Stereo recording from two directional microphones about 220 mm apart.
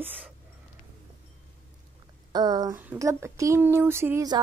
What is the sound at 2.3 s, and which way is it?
Speech, 20° right (ahead or behind).